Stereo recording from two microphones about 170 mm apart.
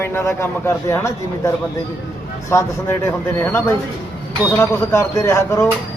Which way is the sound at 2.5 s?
15° left (ahead or behind).